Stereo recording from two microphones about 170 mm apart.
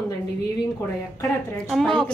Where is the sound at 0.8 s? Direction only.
15° left (ahead or behind).